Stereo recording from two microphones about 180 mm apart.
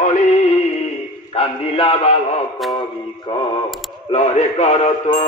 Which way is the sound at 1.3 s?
30° left (ahead or behind).